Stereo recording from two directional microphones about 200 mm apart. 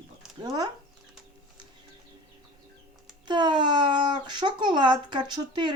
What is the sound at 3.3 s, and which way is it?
Speech, 20° right (ahead or behind).